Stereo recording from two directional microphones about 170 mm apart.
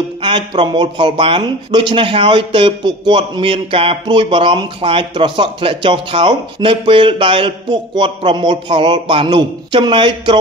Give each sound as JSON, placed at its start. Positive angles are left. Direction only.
{"t": 0.2, "sound": "speech", "side_deg": -30}